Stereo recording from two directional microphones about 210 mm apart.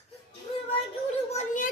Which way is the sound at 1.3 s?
35° left (ahead or behind).